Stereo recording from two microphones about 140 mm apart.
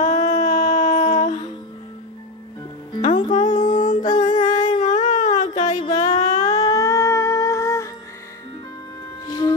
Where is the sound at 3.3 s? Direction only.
60° left (ahead or behind).